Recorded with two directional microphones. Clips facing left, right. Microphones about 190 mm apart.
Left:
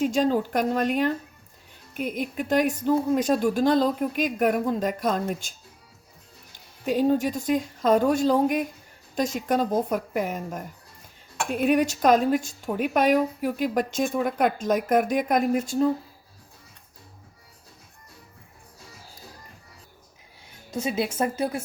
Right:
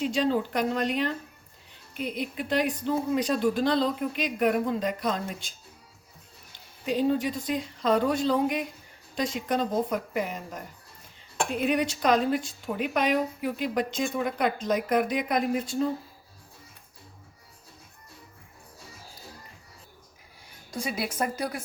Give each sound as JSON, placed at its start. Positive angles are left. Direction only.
{"t": 0.0, "sound": "a woman's voice", "side_deg": 45}
{"t": 6.8, "sound": "a woman's voice", "side_deg": 50}
{"t": 20.7, "sound": "speech", "side_deg": 25}